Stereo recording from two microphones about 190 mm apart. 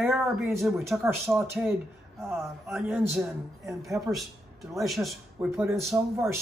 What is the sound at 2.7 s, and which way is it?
Speech, centre (ahead or behind).